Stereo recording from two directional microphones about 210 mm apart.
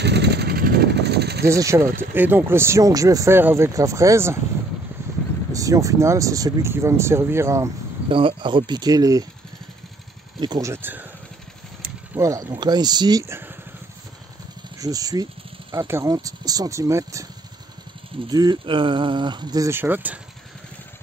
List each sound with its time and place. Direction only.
0.0 s vehicle: 55° right (ahead or behind)
1.5 s speech: 15° right (ahead or behind)
5.5 s speech: 15° right (ahead or behind)
8.1 s speech: 25° right (ahead or behind)
10.4 s speech: 15° right (ahead or behind)
12.2 s speech: 15° right (ahead or behind)
14.8 s speech: 15° right (ahead or behind)